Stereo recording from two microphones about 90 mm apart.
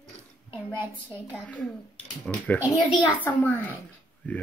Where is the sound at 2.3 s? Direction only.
10° left (ahead or behind).